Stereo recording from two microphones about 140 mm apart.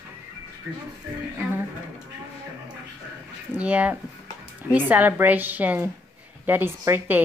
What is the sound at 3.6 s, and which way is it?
Speech, 10° right (ahead or behind).